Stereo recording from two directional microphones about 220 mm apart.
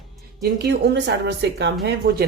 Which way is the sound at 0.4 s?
50° right (ahead or behind).